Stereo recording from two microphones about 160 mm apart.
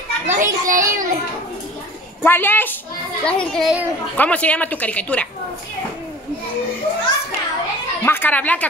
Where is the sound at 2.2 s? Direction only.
15° left (ahead or behind).